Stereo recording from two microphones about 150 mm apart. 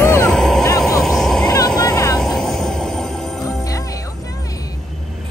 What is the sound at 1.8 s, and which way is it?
Vehicle, 25° left (ahead or behind).